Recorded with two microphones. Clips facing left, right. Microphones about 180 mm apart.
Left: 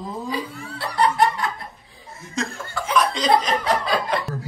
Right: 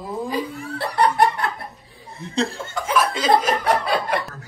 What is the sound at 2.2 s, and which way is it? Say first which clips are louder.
Speech: right 5 dB; 35° right (ahead or behind).